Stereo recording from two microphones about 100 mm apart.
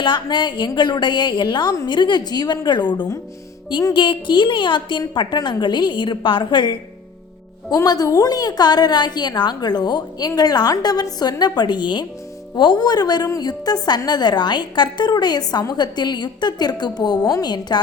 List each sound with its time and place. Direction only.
0.0 s a woman's voice: 50° left (ahead or behind)
7.7 s a woman's voice: 40° left (ahead or behind)